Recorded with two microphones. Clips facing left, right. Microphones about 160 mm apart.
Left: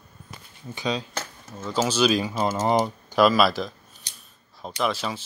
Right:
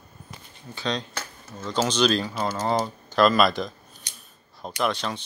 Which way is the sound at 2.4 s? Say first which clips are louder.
Left 3 dB; 20° left (ahead or behind).